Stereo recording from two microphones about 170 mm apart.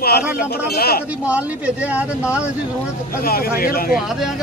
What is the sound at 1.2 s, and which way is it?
Speech, 10° right (ahead or behind).